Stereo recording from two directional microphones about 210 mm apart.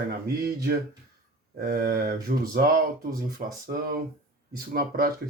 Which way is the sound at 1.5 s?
45° right (ahead or behind).